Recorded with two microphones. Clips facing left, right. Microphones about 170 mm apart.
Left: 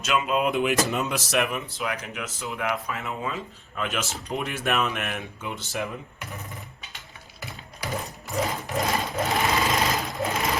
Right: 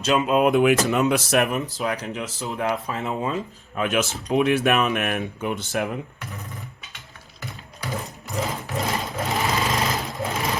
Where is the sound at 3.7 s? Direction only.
55° right (ahead or behind).